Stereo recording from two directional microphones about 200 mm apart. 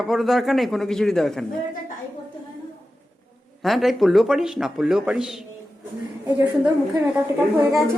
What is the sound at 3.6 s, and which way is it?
Speech, centre (ahead or behind).